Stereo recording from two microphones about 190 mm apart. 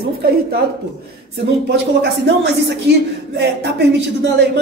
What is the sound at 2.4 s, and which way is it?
A woman's voice, 65° right (ahead or behind).